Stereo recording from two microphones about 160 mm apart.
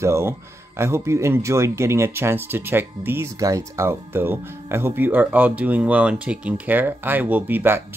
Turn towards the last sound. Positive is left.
turn(degrees=-10)  # may be behind; listen again after turning